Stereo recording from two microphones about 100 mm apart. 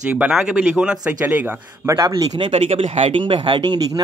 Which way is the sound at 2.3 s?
65° right (ahead or behind).